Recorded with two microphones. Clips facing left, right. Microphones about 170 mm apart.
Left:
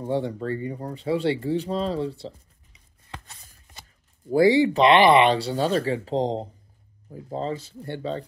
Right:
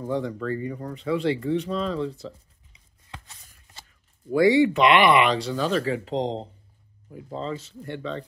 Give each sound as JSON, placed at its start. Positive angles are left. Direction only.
{"t": 0.0, "sound": "speech", "side_deg": 30}
{"t": 4.3, "sound": "speech", "side_deg": 30}